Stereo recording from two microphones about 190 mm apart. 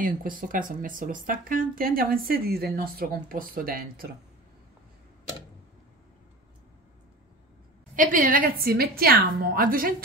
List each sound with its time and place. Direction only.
0.0 s speech: 45° right (ahead or behind)
7.9 s speech: 45° right (ahead or behind)